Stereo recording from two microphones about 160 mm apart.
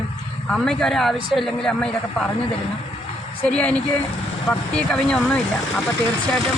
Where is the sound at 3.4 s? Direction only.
10° left (ahead or behind).